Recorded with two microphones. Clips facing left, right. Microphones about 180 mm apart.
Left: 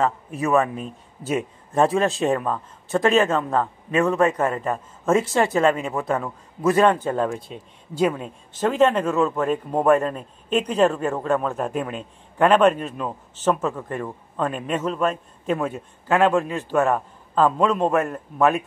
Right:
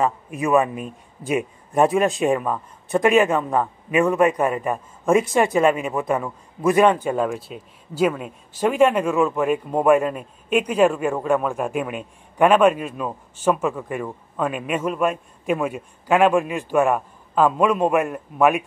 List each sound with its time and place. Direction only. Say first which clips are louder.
0.0 s a man's voice: right 1 dB; 15° right (ahead or behind)